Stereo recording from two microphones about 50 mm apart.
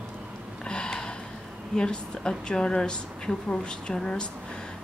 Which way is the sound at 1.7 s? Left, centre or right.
Centre.